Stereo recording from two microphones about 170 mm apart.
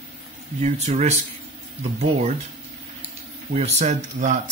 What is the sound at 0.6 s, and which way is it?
Speech, 40° right (ahead or behind).